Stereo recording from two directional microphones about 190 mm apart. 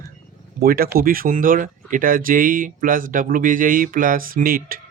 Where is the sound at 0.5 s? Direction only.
50° right (ahead or behind).